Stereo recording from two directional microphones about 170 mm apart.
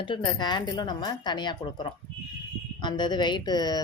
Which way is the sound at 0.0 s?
25° left (ahead or behind).